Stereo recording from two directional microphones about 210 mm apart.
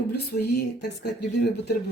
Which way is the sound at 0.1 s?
50° left (ahead or behind).